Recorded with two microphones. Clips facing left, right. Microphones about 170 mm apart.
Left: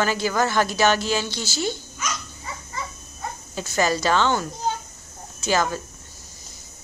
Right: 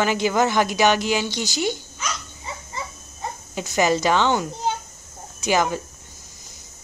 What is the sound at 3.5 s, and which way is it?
A woman's voice, 15° right (ahead or behind).